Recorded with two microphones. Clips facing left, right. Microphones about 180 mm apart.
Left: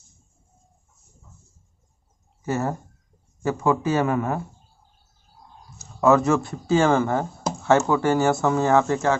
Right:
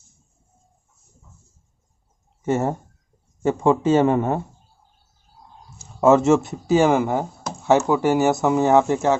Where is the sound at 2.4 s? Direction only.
25° right (ahead or behind).